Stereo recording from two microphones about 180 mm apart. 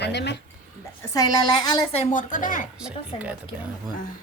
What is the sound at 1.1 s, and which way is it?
Speech, 20° left (ahead or behind).